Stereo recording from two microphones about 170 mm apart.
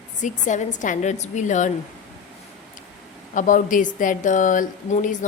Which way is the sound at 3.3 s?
50° left (ahead or behind).